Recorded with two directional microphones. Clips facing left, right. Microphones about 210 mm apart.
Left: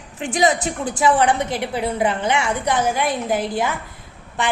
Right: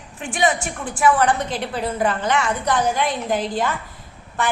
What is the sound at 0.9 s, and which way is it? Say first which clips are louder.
A woman's voice: even; 20° left (ahead or behind).